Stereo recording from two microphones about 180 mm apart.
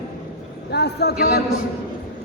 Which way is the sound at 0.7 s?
65° left (ahead or behind).